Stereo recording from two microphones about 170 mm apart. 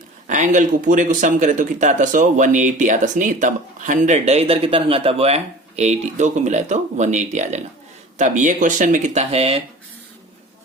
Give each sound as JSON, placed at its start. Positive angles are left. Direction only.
{"t": 0.3, "sound": "speech", "side_deg": -45}